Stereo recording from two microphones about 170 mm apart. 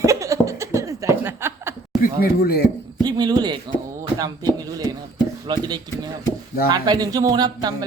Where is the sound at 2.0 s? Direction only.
65° left (ahead or behind).